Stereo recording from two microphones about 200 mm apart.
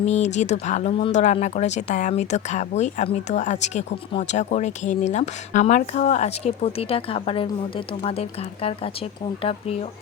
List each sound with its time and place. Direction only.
0.0 s speech: 35° left (ahead or behind)